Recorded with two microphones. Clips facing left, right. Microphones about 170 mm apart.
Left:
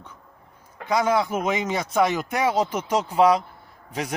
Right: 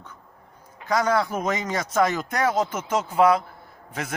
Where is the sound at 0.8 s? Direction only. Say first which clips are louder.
Left 1 dB; 10° left (ahead or behind).